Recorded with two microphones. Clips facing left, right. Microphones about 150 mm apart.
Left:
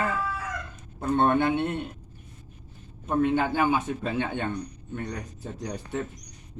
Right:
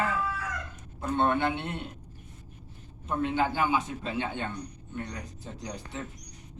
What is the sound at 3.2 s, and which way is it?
A woman's voice, 55° left (ahead or behind).